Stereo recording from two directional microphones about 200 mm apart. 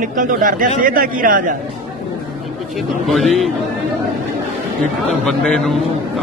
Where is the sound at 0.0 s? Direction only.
40° right (ahead or behind).